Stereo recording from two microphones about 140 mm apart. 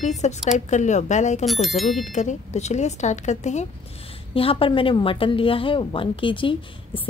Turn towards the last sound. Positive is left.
turn(degrees=40)  # may be behind; listen again after turning